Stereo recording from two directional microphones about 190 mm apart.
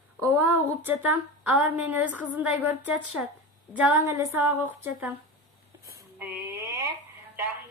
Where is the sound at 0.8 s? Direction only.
10° right (ahead or behind).